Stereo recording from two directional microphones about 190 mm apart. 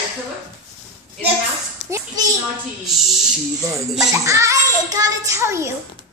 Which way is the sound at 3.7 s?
Centre (ahead or behind).